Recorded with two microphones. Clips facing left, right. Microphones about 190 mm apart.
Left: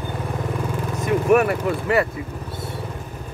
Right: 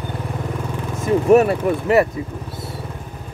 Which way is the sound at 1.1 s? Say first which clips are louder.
Right 4 dB; 25° right (ahead or behind).